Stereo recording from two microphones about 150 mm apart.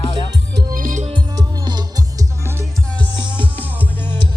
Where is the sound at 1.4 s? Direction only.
30° right (ahead or behind).